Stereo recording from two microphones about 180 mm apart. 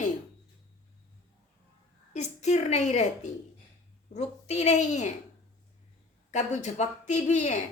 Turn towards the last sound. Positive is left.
turn(degrees=40)  # may be behind; listen again after turning